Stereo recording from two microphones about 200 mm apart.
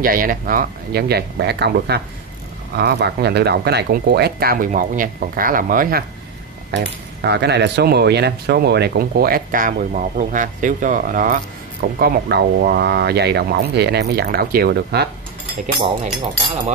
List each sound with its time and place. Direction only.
0.0 s speech: 45° right (ahead or behind)
6.7 s speech: 60° right (ahead or behind); by 11.3 s 40° right (ahead or behind)
11.8 s speech: 50° right (ahead or behind)